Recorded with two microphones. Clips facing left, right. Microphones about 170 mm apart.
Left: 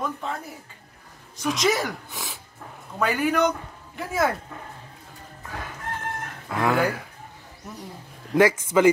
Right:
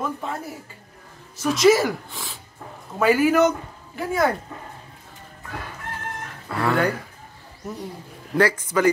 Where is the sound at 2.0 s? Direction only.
15° left (ahead or behind).